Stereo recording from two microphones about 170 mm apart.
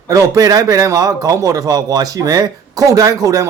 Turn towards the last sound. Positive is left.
turn(degrees=-20)  # may be behind; listen again after turning